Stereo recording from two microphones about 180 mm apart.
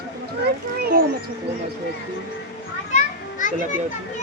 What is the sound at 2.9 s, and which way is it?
Children playing, 45° left (ahead or behind).